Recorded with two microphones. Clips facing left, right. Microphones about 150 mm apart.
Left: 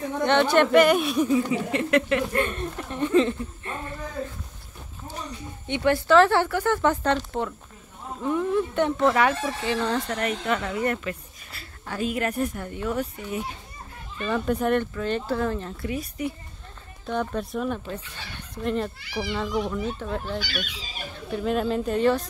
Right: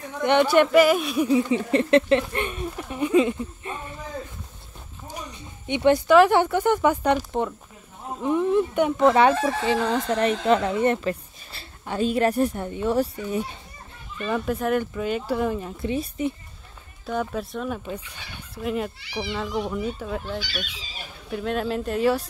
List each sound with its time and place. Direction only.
0.2 s speech: 15° right (ahead or behind)
1.5 s a woman's voice: 30° right (ahead or behind)
2.4 s speech: 10° right (ahead or behind)
5.0 s a woman's voice: 15° right (ahead or behind)
9.0 s a woman's voice: 25° right (ahead or behind)
14.2 s speech: 5° right (ahead or behind)
15.8 s a woman's voice: 25° right (ahead or behind)
17.0 s speech: 5° right (ahead or behind)
17.8 s speech: 10° right (ahead or behind)
21.3 s speech: centre (ahead or behind)